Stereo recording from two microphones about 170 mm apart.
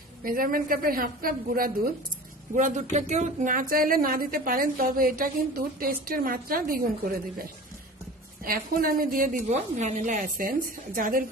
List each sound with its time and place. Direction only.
0.2 s speech: 60° right (ahead or behind)
2.5 s speech: 45° right (ahead or behind)
8.5 s speech: 60° right (ahead or behind)